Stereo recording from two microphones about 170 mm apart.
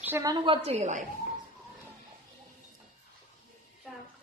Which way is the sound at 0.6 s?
45° right (ahead or behind).